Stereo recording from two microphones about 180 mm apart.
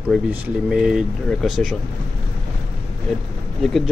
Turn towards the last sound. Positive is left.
turn(degrees=0)  # may be behind; listen again after turning